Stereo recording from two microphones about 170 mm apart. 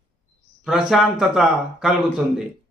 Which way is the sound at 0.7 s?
Centre (ahead or behind).